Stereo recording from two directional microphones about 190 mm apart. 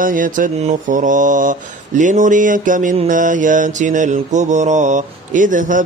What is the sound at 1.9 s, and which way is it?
Mantra, 40° right (ahead or behind).